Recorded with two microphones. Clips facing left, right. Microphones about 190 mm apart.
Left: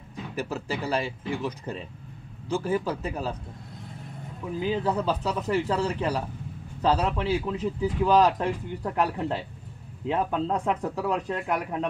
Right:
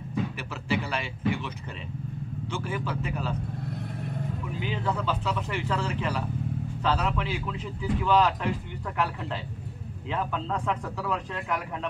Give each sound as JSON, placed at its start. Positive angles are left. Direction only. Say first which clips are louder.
{"t": 0.4, "sound": "speech", "louder": "left 1 dB", "side_deg": 40}
{"t": 4.6, "sound": "speech", "louder": "left 6 dB", "side_deg": 35}